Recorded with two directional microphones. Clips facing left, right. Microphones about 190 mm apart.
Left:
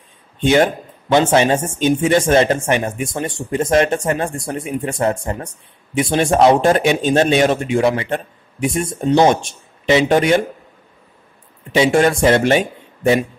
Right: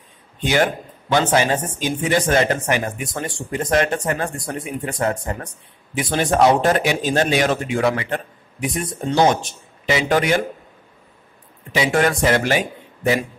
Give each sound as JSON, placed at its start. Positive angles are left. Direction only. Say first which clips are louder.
{"t": 1.1, "sound": "speech", "louder": "left 4 dB", "side_deg": 25}
{"t": 11.7, "sound": "speech", "louder": "left 5 dB", "side_deg": 25}